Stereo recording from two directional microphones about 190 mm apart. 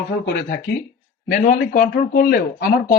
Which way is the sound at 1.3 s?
45° left (ahead or behind).